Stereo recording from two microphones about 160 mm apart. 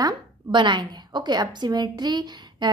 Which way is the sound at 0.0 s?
30° right (ahead or behind).